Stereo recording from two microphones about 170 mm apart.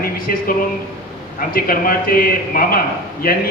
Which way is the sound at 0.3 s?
60° left (ahead or behind).